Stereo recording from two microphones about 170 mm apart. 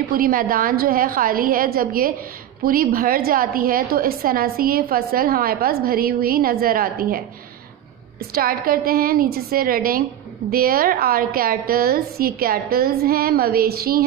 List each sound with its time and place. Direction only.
0.2 s a woman's voice: 55° right (ahead or behind)
8.3 s a woman's voice: 60° right (ahead or behind)